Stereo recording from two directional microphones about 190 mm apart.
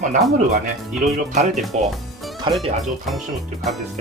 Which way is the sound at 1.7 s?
35° right (ahead or behind).